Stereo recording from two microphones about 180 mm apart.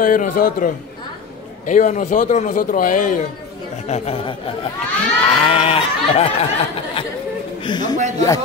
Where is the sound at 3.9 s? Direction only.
30° left (ahead or behind).